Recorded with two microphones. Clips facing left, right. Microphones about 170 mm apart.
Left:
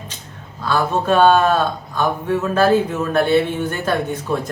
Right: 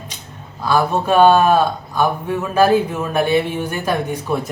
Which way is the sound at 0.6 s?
10° right (ahead or behind).